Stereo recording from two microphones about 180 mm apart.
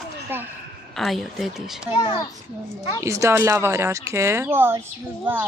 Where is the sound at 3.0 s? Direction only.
15° right (ahead or behind).